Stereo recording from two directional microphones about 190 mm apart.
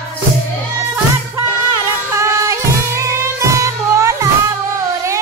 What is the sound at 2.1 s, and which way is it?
Music, 15° right (ahead or behind).